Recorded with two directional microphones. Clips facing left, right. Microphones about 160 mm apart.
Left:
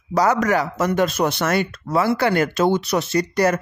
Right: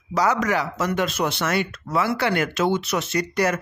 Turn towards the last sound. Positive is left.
turn(degrees=35)  # may be behind; listen again after turning